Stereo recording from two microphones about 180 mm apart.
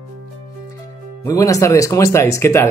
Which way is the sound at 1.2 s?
20° left (ahead or behind).